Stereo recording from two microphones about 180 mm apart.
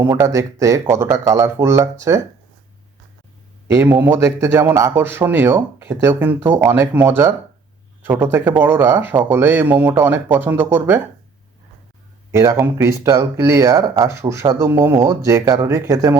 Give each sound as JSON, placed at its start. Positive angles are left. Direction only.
{"t": 0.0, "sound": "speech", "side_deg": -15}
{"t": 3.7, "sound": "speech", "side_deg": -15}
{"t": 12.3, "sound": "speech", "side_deg": -15}